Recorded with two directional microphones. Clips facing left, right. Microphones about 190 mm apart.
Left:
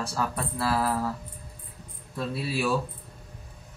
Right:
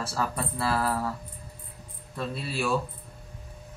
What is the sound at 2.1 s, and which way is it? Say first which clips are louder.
Speech: left 2 dB; 5° left (ahead or behind).